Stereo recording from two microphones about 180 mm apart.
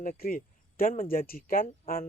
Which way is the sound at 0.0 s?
50° left (ahead or behind).